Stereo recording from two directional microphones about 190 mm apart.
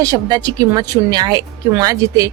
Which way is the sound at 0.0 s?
20° right (ahead or behind).